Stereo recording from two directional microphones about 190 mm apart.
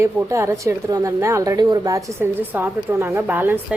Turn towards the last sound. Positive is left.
turn(degrees=-10)  # may be behind; listen again after turning